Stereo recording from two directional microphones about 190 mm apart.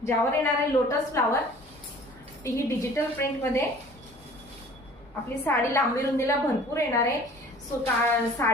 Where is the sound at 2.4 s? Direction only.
15° left (ahead or behind).